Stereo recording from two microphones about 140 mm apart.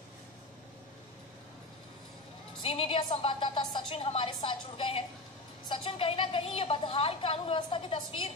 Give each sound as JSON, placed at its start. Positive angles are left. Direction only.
{"t": 2.6, "sound": "a woman's voice", "side_deg": 40}